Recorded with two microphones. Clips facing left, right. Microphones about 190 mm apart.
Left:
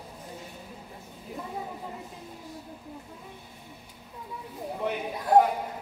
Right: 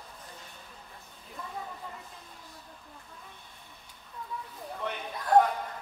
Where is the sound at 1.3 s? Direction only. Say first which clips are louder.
Left 4 dB; 15° left (ahead or behind).